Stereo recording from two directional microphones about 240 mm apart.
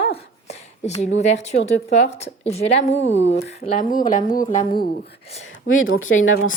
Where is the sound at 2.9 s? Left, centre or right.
Left.